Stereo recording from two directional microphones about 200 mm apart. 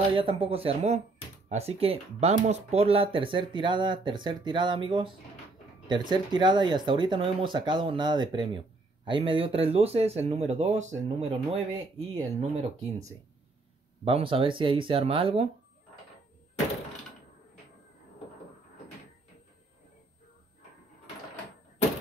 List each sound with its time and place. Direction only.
0.1 s speech: 30° right (ahead or behind)
14.0 s speech: 25° right (ahead or behind)